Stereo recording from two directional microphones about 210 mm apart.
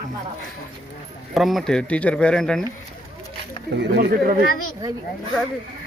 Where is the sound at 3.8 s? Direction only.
50° right (ahead or behind).